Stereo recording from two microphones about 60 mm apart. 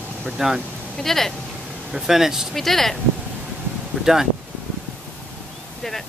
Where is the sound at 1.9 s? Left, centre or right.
Centre.